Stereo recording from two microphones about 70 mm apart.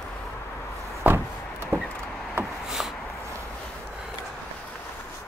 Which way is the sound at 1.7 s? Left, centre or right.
Right.